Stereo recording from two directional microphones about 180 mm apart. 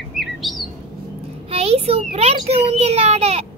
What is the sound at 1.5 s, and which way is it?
A child's voice, 35° right (ahead or behind).